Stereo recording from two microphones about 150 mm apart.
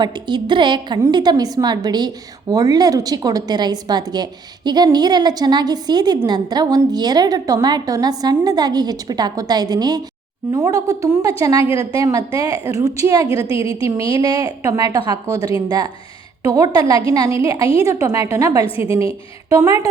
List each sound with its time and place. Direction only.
0.0 s a woman's voice: 30° right (ahead or behind)
11.6 s a woman's voice: 40° left (ahead or behind)
11.9 s a woman's voice: 20° right (ahead or behind)
12.5 s a woman's voice: 40° left (ahead or behind)
12.8 s a woman's voice: 20° right (ahead or behind)
13.5 s a woman's voice: 40° left (ahead or behind)
13.8 s a woman's voice: 20° right (ahead or behind)
18.6 s a woman's voice: 40° left (ahead or behind)
19.5 s a woman's voice: 20° right (ahead or behind)